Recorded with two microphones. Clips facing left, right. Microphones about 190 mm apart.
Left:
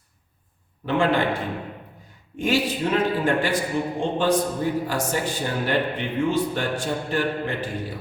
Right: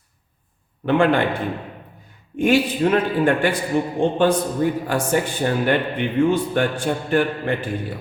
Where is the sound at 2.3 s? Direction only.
55° right (ahead or behind).